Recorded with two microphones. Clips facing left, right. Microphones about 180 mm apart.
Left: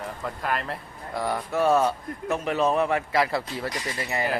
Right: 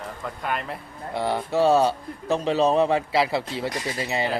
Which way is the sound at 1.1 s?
25° right (ahead or behind).